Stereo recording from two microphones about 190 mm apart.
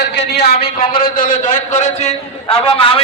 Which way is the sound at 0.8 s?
25° left (ahead or behind).